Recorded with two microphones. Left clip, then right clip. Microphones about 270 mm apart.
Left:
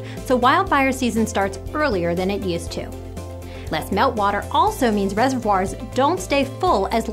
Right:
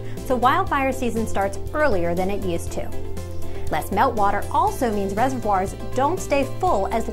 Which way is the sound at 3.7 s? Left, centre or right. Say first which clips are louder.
Left 1 dB; right.